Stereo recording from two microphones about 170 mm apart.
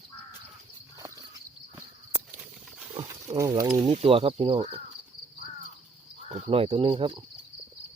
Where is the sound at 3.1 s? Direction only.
20° right (ahead or behind).